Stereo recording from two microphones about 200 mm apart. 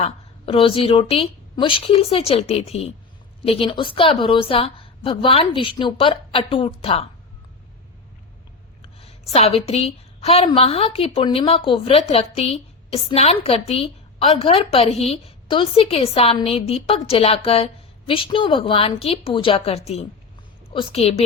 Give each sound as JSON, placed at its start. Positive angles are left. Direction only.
{"t": 0.0, "sound": "a woman's voice", "side_deg": 30}
{"t": 8.8, "sound": "a sound", "side_deg": 30}
{"t": 9.3, "sound": "a woman's voice", "side_deg": 30}